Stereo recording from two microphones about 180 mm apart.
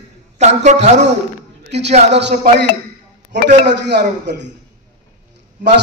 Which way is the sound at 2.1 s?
75° right (ahead or behind).